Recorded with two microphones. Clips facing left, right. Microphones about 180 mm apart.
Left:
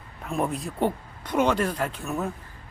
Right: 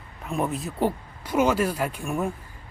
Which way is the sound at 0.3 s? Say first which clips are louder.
Even; centre (ahead or behind).